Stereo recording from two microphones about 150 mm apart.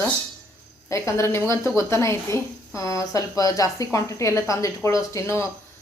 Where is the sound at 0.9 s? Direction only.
20° left (ahead or behind).